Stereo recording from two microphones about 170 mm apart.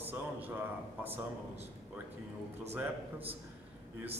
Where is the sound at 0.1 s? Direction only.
10° right (ahead or behind).